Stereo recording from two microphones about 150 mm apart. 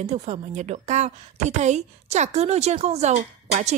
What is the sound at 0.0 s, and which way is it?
A woman's voice, 45° right (ahead or behind).